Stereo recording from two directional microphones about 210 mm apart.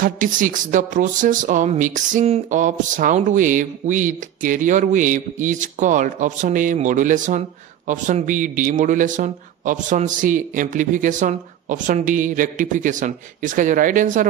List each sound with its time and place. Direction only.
0.0 s speech: 40° right (ahead or behind)